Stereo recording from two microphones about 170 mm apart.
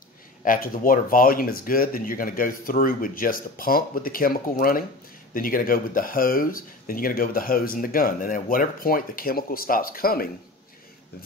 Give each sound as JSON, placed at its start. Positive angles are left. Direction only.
{"t": 0.4, "sound": "speech", "side_deg": 55}